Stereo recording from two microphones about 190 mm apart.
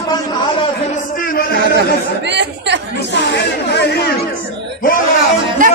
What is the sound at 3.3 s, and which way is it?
Chatter, 60° left (ahead or behind).